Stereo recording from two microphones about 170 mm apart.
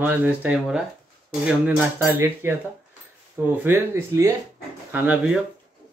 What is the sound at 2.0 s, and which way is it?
Speech, 15° right (ahead or behind).